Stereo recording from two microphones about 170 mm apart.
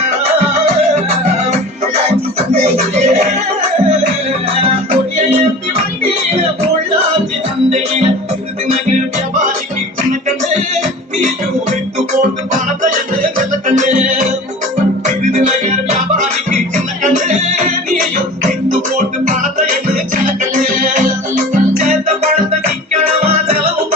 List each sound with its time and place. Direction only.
0.2 s music: 40° right (ahead or behind)
2.5 s music: 40° right (ahead or behind)
5.1 s music: 40° right (ahead or behind)
13.7 s music: 45° right (ahead or behind)
19.2 s music: 45° right (ahead or behind)
22.9 s music: 40° right (ahead or behind)